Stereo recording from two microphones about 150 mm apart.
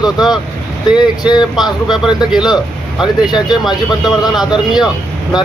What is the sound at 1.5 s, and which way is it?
Speech, centre (ahead or behind).